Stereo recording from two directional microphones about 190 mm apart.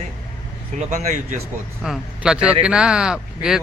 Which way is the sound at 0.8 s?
35° right (ahead or behind).